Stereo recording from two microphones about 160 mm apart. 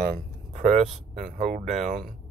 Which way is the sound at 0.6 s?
45° right (ahead or behind).